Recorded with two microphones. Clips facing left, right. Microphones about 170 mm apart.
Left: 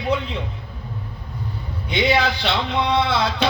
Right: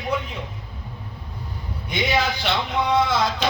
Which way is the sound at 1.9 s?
65° left (ahead or behind).